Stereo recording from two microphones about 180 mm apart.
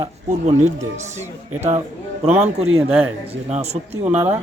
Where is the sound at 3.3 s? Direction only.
35° right (ahead or behind).